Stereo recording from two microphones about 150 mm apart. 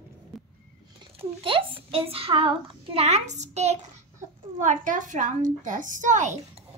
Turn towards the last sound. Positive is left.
turn(degrees=-55)  # may be behind; listen again after turning